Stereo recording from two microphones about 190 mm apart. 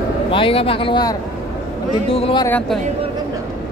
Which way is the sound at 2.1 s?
30° left (ahead or behind).